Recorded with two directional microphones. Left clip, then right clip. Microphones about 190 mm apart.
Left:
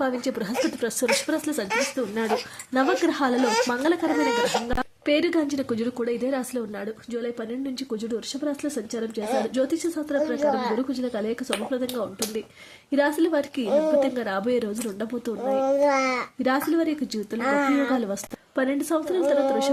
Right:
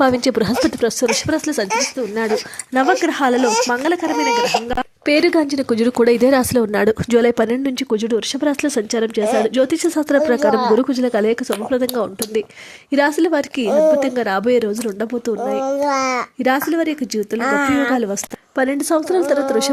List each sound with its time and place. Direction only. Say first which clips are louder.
0.0 s a woman's voice: right 11 dB; 40° right (ahead or behind); by 4.9 s 20° right (ahead or behind)
5.0 s speech: right 8 dB; 35° right (ahead or behind); by 10.8 s 55° right (ahead or behind)
10.8 s a woman's voice: right 11 dB; 40° right (ahead or behind)
15.6 s a child's voice: right 2 dB; 55° right (ahead or behind)
16.4 s a woman's voice: right 6 dB; 35° right (ahead or behind)
17.4 s speech: right 5 dB; 50° right (ahead or behind)
17.9 s a woman's voice: right 7 dB; 30° right (ahead or behind)